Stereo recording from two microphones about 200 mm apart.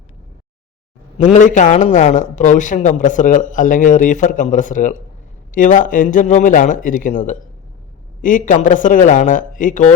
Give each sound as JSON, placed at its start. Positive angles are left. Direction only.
{"t": 1.2, "sound": "a man's voice", "side_deg": 40}